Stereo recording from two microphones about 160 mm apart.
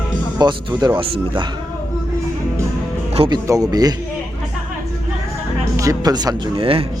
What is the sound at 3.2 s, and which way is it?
Speech, 25° right (ahead or behind).